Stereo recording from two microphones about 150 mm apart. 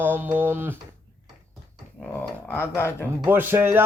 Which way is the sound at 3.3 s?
15° right (ahead or behind).